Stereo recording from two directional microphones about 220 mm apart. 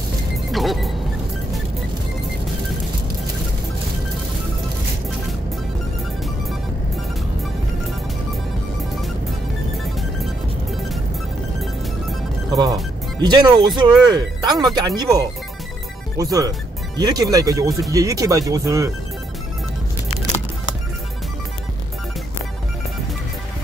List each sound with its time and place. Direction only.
0.5 s music: centre (ahead or behind)
12.4 s music: 20° right (ahead or behind)
13.2 s speech: 20° right (ahead or behind)